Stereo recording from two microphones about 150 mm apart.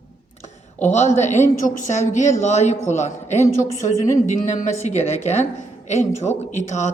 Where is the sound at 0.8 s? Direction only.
50° left (ahead or behind).